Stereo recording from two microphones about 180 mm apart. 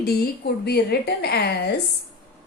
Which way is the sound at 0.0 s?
60° left (ahead or behind).